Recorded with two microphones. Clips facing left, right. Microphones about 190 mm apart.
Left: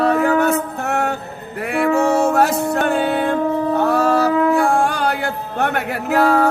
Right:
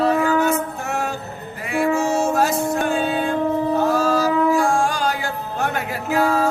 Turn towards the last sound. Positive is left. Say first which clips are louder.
# left 4 dB
turn(degrees=65)  # may be behind; listen again after turning